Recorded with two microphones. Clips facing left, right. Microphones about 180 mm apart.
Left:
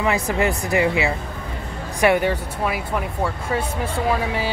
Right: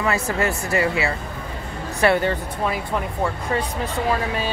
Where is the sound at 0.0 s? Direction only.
15° left (ahead or behind).